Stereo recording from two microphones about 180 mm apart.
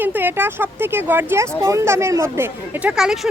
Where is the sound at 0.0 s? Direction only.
10° right (ahead or behind).